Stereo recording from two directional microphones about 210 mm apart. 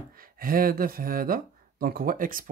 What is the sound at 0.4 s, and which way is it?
Speech, 45° right (ahead or behind).